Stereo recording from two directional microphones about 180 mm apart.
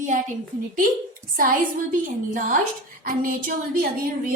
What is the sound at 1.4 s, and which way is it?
A woman's voice, 50° right (ahead or behind).